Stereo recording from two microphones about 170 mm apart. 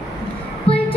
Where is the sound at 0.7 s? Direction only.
35° left (ahead or behind).